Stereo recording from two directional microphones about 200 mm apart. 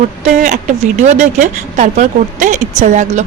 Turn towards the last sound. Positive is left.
turn(degrees=-40)  # may be behind; listen again after turning